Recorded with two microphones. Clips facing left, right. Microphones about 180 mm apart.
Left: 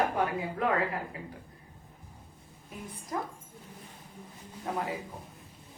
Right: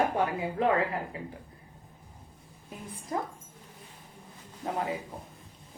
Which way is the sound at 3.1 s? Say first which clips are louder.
Right 2 dB; 30° right (ahead or behind).